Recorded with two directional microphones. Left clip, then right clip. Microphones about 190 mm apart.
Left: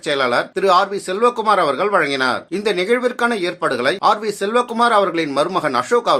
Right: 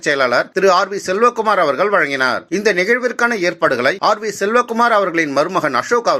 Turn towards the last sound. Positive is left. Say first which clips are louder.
# right 1 dB
turn(degrees=-20)  # may be behind; listen again after turning